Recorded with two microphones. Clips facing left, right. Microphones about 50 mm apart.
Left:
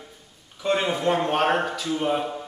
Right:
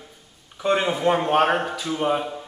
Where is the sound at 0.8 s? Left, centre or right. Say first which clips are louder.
Right 2 dB; centre.